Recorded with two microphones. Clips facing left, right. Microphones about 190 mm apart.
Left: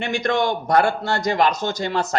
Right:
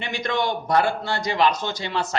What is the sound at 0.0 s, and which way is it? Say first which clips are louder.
A man's voice: left 4 dB; 45° left (ahead or behind).